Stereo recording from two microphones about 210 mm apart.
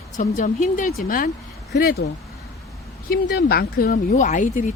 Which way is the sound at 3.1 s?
50° left (ahead or behind).